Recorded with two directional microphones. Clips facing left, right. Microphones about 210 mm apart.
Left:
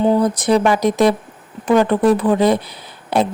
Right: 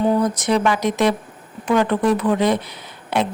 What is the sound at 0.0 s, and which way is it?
A woman's voice, 30° left (ahead or behind).